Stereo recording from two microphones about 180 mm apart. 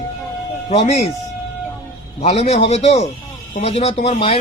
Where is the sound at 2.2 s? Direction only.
35° left (ahead or behind).